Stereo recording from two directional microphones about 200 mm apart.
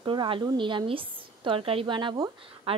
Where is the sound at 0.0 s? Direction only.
25° right (ahead or behind).